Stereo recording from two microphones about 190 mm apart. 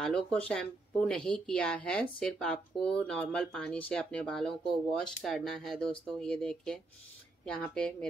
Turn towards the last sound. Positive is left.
turn(degrees=5)  # may be behind; listen again after turning